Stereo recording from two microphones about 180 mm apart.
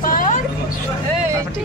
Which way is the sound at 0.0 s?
50° left (ahead or behind).